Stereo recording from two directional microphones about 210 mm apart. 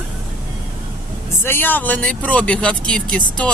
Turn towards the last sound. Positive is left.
turn(degrees=5)  # may be behind; listen again after turning